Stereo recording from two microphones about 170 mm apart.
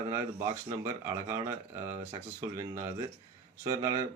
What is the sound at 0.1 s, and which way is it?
Speech, 15° right (ahead or behind).